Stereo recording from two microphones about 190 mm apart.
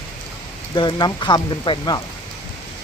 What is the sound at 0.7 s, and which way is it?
Speech, 25° left (ahead or behind).